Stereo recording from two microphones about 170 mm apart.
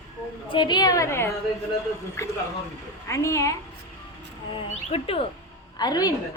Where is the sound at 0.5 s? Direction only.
25° left (ahead or behind).